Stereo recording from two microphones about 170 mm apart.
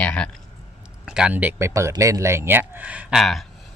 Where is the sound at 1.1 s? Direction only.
5° right (ahead or behind).